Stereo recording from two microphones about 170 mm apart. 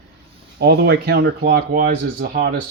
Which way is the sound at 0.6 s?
70° right (ahead or behind).